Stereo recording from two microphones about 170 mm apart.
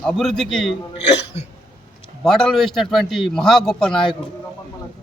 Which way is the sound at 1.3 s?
40° left (ahead or behind).